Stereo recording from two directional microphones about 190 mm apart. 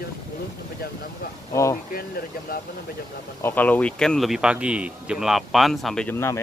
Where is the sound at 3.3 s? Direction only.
10° left (ahead or behind).